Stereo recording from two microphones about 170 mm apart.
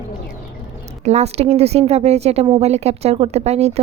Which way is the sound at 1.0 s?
40° right (ahead or behind).